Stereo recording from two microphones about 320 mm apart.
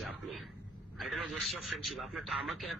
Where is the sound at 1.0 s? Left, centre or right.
Centre.